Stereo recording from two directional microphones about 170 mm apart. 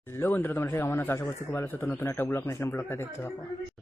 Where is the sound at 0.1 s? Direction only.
10° left (ahead or behind).